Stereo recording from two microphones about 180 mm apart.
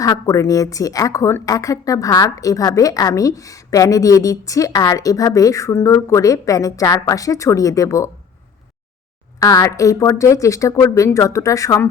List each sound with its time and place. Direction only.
0.0 s a woman's voice: 20° left (ahead or behind)
9.4 s speech: 20° left (ahead or behind)